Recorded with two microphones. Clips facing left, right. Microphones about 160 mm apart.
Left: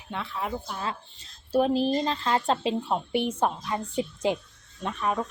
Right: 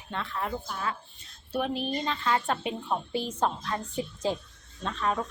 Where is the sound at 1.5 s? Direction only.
35° left (ahead or behind).